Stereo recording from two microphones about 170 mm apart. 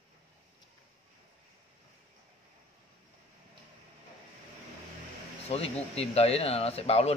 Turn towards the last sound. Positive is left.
turn(degrees=40)  # may be behind; listen again after turning